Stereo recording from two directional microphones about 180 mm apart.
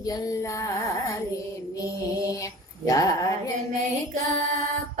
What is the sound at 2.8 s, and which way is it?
Speech, 20° left (ahead or behind).